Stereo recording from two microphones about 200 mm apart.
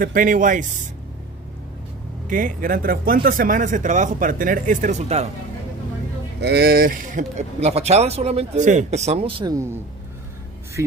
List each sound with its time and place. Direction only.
0.0 s speech: 45° right (ahead or behind)
2.2 s speech: 40° right (ahead or behind)
6.4 s speech: 55° right (ahead or behind); by 9.8 s 15° right (ahead or behind)